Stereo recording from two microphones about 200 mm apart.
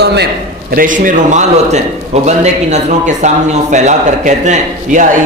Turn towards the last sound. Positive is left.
turn(degrees=-35)  # may be behind; listen again after turning